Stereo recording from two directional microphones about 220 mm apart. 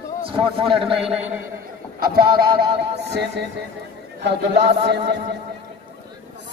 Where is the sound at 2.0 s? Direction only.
45° right (ahead or behind).